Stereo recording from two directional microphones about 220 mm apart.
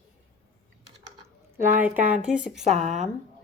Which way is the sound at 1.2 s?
10° right (ahead or behind).